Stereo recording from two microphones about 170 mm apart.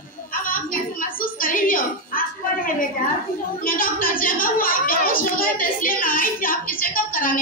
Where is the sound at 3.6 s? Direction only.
55° left (ahead or behind).